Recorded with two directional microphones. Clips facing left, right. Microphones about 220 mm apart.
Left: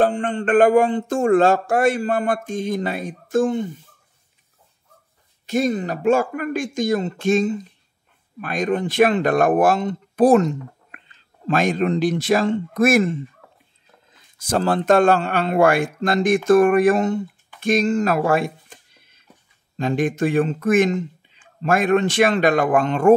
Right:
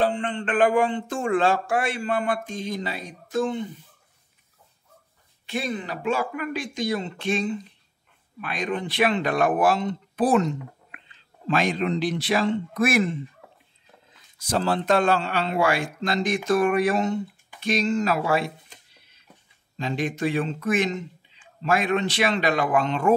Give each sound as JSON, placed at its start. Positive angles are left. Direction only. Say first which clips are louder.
{"t": 0.0, "sound": "speech", "louder": "left 5 dB", "side_deg": 45}
{"t": 5.5, "sound": "speech", "louder": "left 8 dB", "side_deg": 45}
{"t": 14.4, "sound": "speech", "louder": "left 4 dB", "side_deg": 50}
{"t": 17.6, "sound": "a sound", "louder": "left 5 dB", "side_deg": 50}
{"t": 19.8, "sound": "speech", "louder": "left 6 dB", "side_deg": 50}